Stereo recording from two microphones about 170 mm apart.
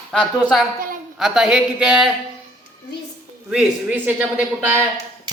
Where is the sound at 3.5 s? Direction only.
10° right (ahead or behind).